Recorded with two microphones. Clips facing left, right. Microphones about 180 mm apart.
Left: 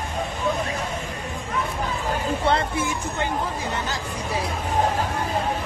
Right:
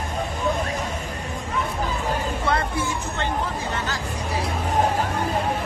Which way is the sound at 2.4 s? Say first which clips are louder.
Left 2 dB; 25° left (ahead or behind).